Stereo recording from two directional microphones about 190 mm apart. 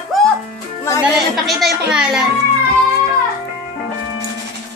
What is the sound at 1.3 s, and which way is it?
Speech, centre (ahead or behind).